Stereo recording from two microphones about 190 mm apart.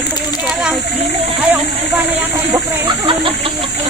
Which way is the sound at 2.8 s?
25° right (ahead or behind).